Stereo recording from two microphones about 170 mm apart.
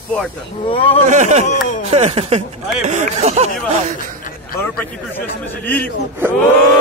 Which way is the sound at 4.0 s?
55° left (ahead or behind).